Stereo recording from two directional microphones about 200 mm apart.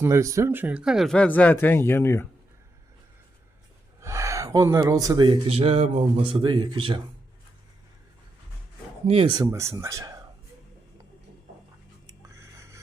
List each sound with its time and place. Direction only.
0.0 s speech: 15° right (ahead or behind); by 2.2 s 15° left (ahead or behind)
4.0 s speech: 15° right (ahead or behind)
9.0 s speech: 25° right (ahead or behind)
12.0 s a sound: 15° right (ahead or behind)